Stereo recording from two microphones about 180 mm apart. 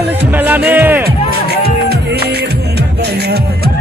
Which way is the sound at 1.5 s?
65° right (ahead or behind).